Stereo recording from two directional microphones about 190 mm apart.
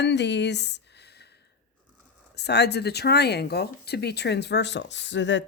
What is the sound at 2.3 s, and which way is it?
Speech, 60° left (ahead or behind).